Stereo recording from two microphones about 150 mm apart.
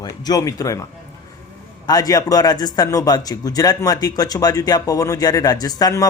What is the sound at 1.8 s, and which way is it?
A man's voice, 25° left (ahead or behind).